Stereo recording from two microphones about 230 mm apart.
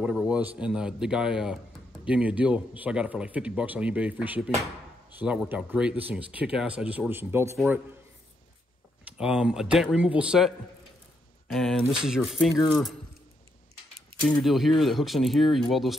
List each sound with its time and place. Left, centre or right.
0.0 s a sound: centre
0.6 s speech: centre
9.0 s speech: centre
11.5 s speech: centre
14.4 s speech: centre